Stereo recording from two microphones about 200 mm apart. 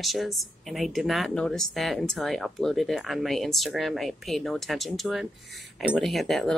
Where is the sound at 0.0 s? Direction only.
Centre (ahead or behind).